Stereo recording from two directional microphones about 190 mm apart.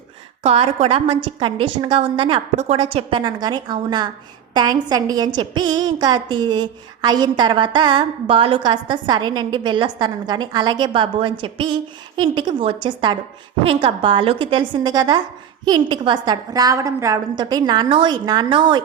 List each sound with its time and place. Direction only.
0.4 s a woman's voice: 30° right (ahead or behind)